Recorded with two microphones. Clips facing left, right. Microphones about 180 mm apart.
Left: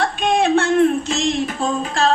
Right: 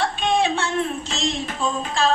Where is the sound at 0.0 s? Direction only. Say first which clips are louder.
Left 3 dB; 50° left (ahead or behind).